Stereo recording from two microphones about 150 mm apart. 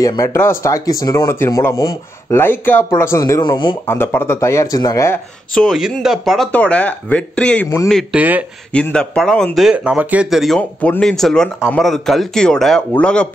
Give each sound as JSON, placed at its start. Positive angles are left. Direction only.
{"t": 0.0, "sound": "speech", "side_deg": 20}
{"t": 3.8, "sound": "speech", "side_deg": 15}
{"t": 5.5, "sound": "speech", "side_deg": 0}
{"t": 7.9, "sound": "speech", "side_deg": -10}
{"t": 8.7, "sound": "speech", "side_deg": 5}